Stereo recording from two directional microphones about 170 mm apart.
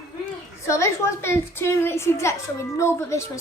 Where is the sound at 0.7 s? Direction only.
15° left (ahead or behind).